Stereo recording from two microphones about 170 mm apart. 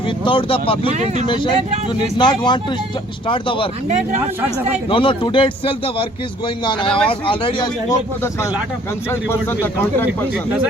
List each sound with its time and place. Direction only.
0.3 s speech: 30° left (ahead or behind)
0.9 s speech: 40° right (ahead or behind)
1.3 s speech: 30° left (ahead or behind)
3.8 s speech: 40° right (ahead or behind)
4.9 s speech: 30° left (ahead or behind)
9.0 s speech: 15° left (ahead or behind)